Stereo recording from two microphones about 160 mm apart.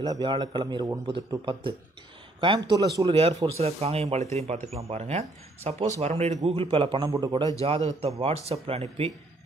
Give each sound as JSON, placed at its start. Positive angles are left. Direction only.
{"t": 0.0, "sound": "a man's voice", "side_deg": -25}
{"t": 7.1, "sound": "a man's voice", "side_deg": -20}
{"t": 7.6, "sound": "speech", "side_deg": -40}